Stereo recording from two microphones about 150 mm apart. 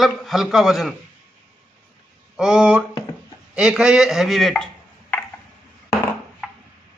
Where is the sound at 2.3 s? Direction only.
5° right (ahead or behind).